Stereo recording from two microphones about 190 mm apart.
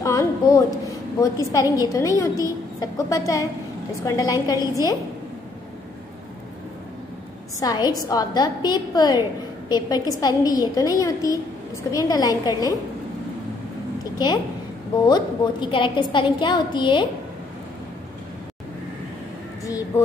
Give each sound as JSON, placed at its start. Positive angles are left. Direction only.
{"t": 0.0, "sound": "a sound", "side_deg": 15}
{"t": 1.2, "sound": "a woman's voice", "side_deg": 20}
{"t": 7.6, "sound": "a woman's voice", "side_deg": 20}
{"t": 14.1, "sound": "a woman's voice", "side_deg": 20}